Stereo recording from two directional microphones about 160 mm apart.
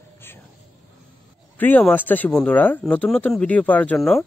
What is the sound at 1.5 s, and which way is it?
Speech, 10° left (ahead or behind).